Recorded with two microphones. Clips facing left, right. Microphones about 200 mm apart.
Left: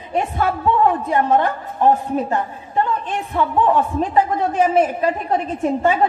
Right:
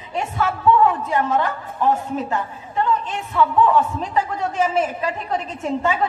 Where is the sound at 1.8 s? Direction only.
55° left (ahead or behind).